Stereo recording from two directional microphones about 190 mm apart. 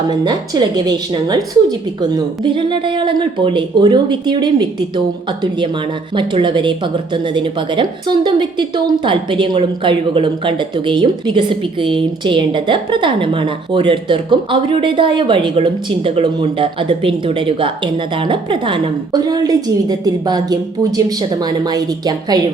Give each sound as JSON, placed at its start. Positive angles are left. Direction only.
{"t": 0.1, "sound": "a woman's voice", "side_deg": -20}
{"t": 6.1, "sound": "a woman's voice", "side_deg": -25}